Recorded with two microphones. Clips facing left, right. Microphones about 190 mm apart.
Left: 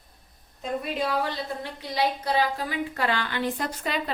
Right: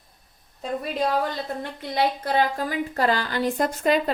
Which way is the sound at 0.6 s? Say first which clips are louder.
Right 3 dB; 40° right (ahead or behind).